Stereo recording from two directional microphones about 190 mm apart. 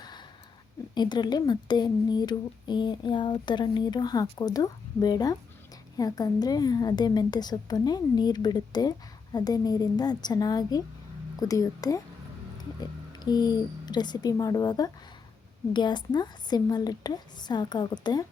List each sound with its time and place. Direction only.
0.9 s a woman's voice: 20° left (ahead or behind)